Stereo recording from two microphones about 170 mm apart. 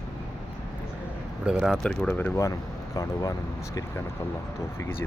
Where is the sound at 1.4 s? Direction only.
5° right (ahead or behind).